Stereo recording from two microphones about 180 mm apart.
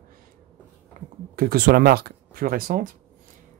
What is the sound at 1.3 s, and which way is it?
Speech, 55° right (ahead or behind).